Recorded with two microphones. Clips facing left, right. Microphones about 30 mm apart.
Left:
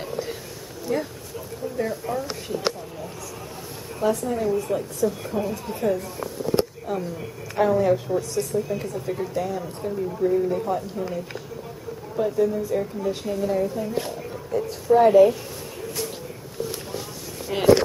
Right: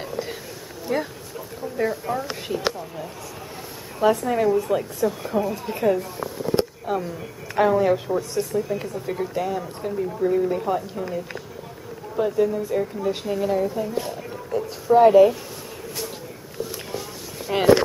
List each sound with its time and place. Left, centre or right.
0.9 s speech: right
4.0 s speech: right
5.2 s speech: centre
5.7 s speech: right
6.5 s a sound: centre
7.5 s speech: right
12.2 s speech: right
14.3 s a sound: centre
17.5 s speech: centre